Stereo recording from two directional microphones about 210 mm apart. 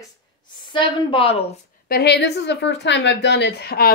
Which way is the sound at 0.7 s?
20° left (ahead or behind).